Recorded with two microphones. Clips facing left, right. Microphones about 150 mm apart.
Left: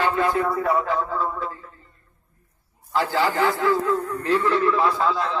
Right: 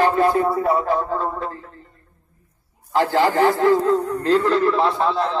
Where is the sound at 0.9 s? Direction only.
50° right (ahead or behind).